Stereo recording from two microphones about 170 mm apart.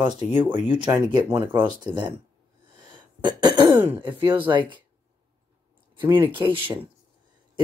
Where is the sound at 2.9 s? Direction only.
25° right (ahead or behind).